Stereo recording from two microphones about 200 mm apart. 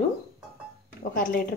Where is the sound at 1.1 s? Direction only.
45° left (ahead or behind).